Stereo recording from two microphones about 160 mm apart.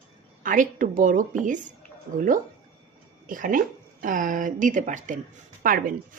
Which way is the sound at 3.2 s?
55° right (ahead or behind).